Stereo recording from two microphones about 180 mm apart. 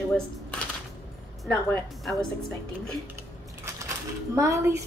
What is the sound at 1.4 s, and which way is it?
Speech, 5° left (ahead or behind).